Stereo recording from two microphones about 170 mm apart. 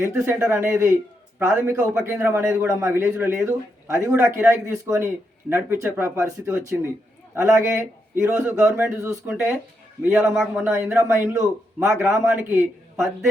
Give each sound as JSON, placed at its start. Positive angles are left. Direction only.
{"t": 0.0, "sound": "a man's voice", "side_deg": -15}
{"t": 10.3, "sound": "a man's voice", "side_deg": -5}
{"t": 10.7, "sound": "a man's voice", "side_deg": -15}